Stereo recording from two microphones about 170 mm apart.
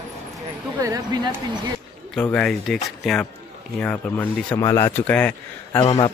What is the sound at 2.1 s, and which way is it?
Speech, 5° left (ahead or behind).